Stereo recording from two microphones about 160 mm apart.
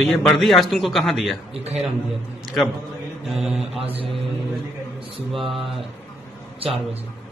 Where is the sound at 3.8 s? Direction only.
35° right (ahead or behind).